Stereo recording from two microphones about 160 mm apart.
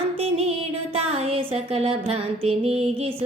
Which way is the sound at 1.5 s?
35° right (ahead or behind).